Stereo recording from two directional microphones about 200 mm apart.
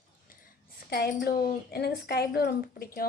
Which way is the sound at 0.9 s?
50° left (ahead or behind).